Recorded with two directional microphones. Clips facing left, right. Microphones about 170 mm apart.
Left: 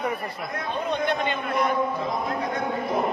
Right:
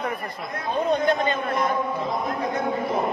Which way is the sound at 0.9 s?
40° right (ahead or behind).